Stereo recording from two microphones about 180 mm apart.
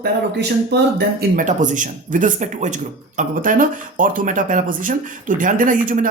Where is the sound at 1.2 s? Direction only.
45° right (ahead or behind).